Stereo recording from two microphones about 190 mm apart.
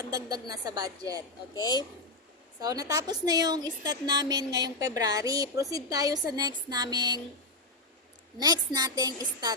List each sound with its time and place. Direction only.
0.0 s a woman's voice: 20° right (ahead or behind)
1.5 s speech: 20° left (ahead or behind)
2.6 s a woman's voice: 20° right (ahead or behind)
8.4 s a woman's voice: 20° right (ahead or behind)